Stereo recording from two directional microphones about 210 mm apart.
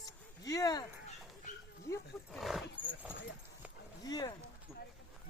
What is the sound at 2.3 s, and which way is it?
Roaring cats, centre (ahead or behind).